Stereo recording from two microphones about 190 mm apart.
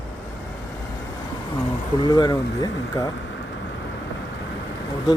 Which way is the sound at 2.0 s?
20° left (ahead or behind).